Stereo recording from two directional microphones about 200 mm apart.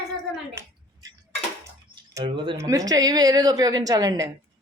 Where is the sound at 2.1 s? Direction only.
25° right (ahead or behind).